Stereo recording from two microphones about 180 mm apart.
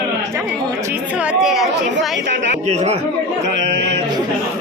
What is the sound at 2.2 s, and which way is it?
Speech, 80° right.